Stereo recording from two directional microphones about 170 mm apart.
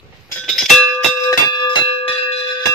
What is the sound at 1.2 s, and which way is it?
Bell, 25° left (ahead or behind).